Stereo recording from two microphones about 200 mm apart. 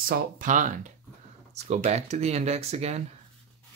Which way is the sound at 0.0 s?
45° right (ahead or behind).